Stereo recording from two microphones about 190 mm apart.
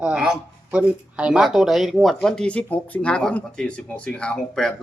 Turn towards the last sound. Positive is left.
turn(degrees=5)  # may be behind; listen again after turning